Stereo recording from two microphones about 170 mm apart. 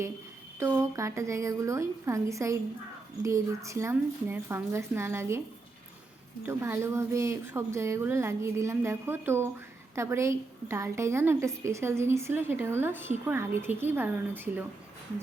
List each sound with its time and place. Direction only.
0.6 s a woman's voice: 15° right (ahead or behind)
6.4 s a woman's voice: 15° right (ahead or behind)